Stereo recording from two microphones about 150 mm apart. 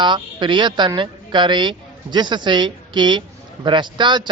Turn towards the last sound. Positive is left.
turn(degrees=-30)  # may be behind; listen again after turning